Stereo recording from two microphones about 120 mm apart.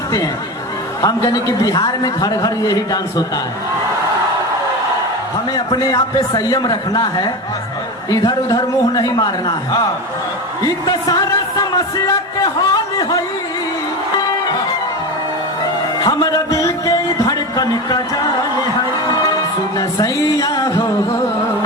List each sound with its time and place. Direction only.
1.0 s a man's voice: 30° left (ahead or behind)
5.5 s a man's voice: 35° left (ahead or behind)
16.0 s speech: 30° left (ahead or behind)
20.0 s music: 30° left (ahead or behind)